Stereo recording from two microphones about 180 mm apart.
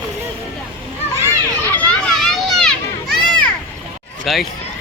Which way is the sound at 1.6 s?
10° left (ahead or behind).